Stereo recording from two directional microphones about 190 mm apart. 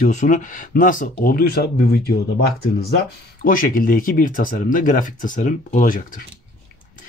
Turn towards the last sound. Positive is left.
turn(degrees=45)  # may be behind; listen again after turning